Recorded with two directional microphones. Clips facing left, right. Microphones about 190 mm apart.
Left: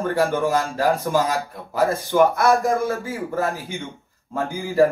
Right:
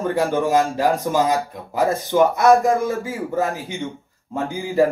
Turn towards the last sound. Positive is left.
turn(degrees=-15)  # may be behind; listen again after turning